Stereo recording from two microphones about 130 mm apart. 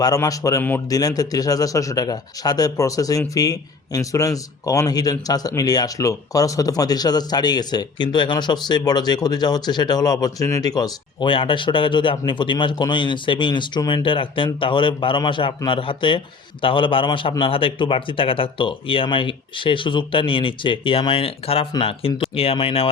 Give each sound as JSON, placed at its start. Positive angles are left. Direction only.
{"t": 0.0, "sound": "speech", "side_deg": 25}